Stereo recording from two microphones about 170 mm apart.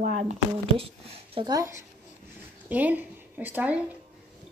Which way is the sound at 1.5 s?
20° right (ahead or behind).